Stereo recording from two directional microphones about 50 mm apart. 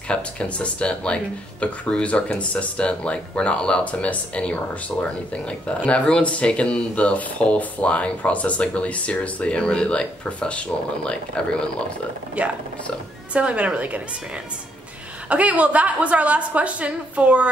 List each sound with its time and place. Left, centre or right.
0.1 s speech: left
12.4 s a woman's voice: right
15.2 s a woman's voice: right